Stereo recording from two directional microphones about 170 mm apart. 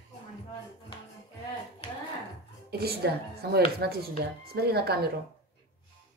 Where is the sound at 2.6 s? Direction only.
70° right (ahead or behind).